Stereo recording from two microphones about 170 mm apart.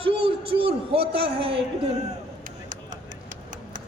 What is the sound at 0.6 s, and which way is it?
A man's voice, 35° right (ahead or behind).